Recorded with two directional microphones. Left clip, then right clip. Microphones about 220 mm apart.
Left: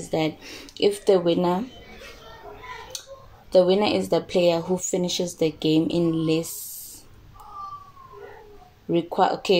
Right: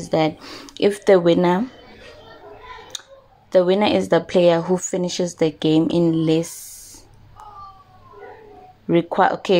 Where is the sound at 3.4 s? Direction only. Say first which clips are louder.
Right 2 dB; 20° right (ahead or behind).